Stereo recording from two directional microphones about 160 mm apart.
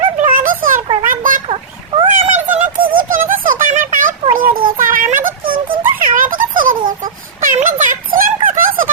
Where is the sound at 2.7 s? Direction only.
60° right (ahead or behind).